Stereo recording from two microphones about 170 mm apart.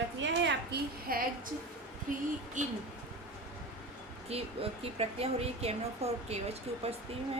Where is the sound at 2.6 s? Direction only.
45° right (ahead or behind).